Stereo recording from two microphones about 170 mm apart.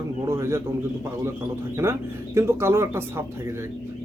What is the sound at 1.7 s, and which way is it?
A man's voice, 15° right (ahead or behind).